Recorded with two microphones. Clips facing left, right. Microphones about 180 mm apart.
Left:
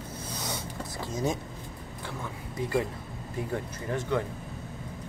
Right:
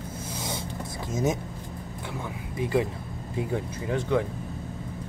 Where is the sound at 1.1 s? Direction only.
20° right (ahead or behind).